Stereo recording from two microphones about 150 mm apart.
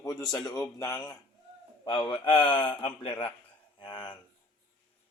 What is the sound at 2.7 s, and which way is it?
Speech, 35° left (ahead or behind).